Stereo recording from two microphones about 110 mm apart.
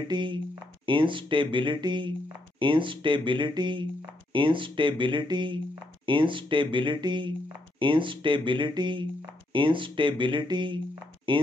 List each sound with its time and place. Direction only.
0.1 s speech: 45° right (ahead or behind)